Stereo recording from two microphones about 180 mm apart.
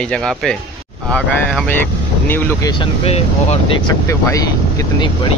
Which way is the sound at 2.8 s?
35° left (ahead or behind).